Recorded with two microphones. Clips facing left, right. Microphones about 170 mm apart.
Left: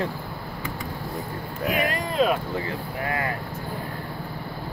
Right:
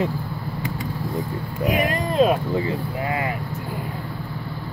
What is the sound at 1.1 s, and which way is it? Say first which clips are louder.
Speech: right 5 dB; 20° right (ahead or behind).